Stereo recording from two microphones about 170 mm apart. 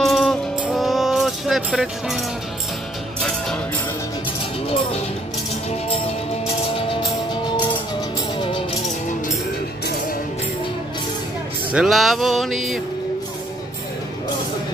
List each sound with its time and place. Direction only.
0.0 s music: centre (ahead or behind)
6.9 s music: 25° left (ahead or behind)
11.7 s speech: centre (ahead or behind)